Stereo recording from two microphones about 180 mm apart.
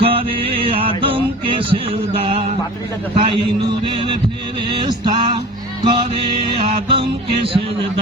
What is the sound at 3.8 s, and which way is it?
Music, 25° right (ahead or behind).